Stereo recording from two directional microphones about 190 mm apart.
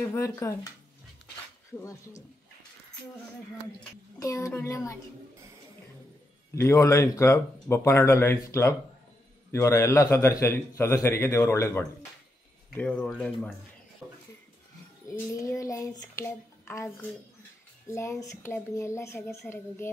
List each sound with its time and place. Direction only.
0.0 s a man's voice: 15° left (ahead or behind)
1.8 s a man's voice: 15° left (ahead or behind)
4.2 s a man's voice: 15° left (ahead or behind)
6.5 s a man's voice: 15° left (ahead or behind)
14.0 s a sound: 5° right (ahead or behind)
15.0 s a man's voice: 15° left (ahead or behind)